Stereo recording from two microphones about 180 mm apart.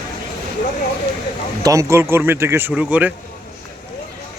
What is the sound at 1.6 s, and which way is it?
Speech, 20° right (ahead or behind).